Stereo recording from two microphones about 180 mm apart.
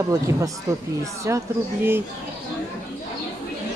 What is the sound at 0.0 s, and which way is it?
Speech, 15° right (ahead or behind).